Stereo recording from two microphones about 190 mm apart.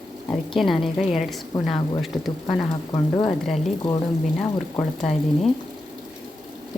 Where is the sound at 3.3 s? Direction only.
Centre (ahead or behind).